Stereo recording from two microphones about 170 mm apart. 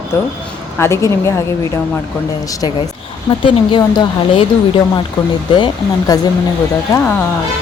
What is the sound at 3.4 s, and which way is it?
Speech, 30° left (ahead or behind).